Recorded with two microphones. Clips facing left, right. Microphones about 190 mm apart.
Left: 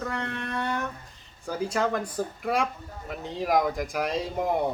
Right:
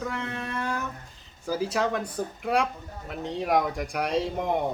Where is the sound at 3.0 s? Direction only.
Centre (ahead or behind).